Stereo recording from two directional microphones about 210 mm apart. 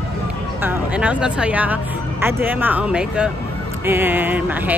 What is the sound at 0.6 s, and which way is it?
Speech, 10° right (ahead or behind).